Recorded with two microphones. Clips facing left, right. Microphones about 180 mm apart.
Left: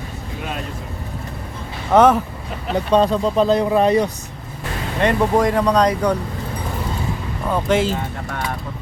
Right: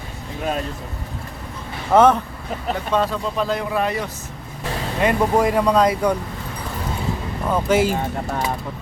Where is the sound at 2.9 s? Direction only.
20° left (ahead or behind).